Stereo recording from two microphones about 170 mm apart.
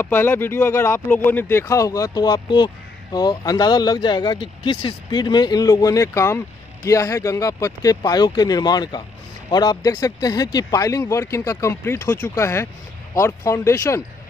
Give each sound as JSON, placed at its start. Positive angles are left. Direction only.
{"t": 0.0, "sound": "speech", "side_deg": 15}